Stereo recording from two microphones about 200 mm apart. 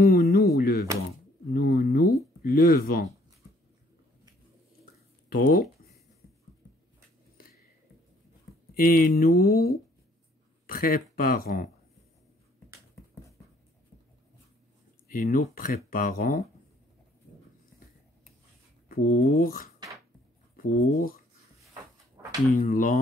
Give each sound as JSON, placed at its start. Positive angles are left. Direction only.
{"t": 0.0, "sound": "a sound", "side_deg": 50}
{"t": 2.4, "sound": "speech", "side_deg": 50}
{"t": 5.3, "sound": "speech", "side_deg": 45}
{"t": 8.7, "sound": "speech", "side_deg": 45}
{"t": 9.3, "sound": "speech", "side_deg": 15}
{"t": 10.7, "sound": "speech", "side_deg": 45}
{"t": 15.0, "sound": "speech", "side_deg": 40}
{"t": 18.9, "sound": "speech", "side_deg": 50}
{"t": 22.2, "sound": "a sound", "side_deg": -15}
{"t": 22.6, "sound": "speech", "side_deg": 45}